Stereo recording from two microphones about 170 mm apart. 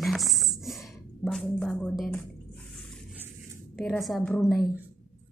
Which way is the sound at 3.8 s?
Centre (ahead or behind).